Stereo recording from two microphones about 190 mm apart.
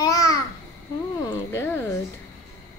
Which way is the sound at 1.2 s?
15° left (ahead or behind).